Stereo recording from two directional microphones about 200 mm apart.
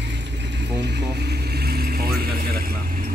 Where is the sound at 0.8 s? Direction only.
55° right (ahead or behind).